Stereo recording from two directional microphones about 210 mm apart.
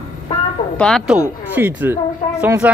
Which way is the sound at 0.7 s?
5° left (ahead or behind).